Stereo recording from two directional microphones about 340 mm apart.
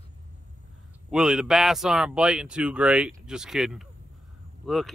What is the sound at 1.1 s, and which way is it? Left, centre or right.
Speech, centre.